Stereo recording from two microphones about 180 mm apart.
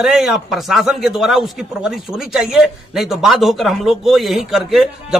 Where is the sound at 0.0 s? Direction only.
Centre (ahead or behind).